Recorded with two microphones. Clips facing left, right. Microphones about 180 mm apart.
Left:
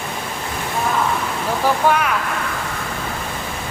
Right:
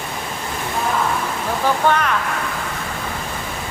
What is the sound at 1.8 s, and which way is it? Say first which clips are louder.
Speech: even; 10° left (ahead or behind).